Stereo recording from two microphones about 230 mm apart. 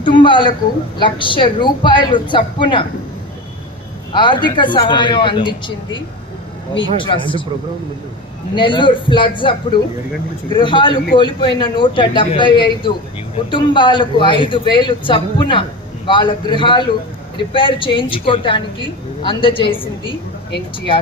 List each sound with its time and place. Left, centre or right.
0.0 s a man's voice: left
4.1 s a man's voice: centre
8.5 s a man's voice: left